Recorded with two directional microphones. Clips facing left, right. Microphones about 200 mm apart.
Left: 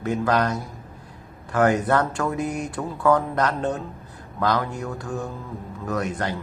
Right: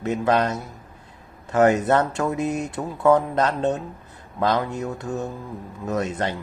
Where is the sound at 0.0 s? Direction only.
20° right (ahead or behind).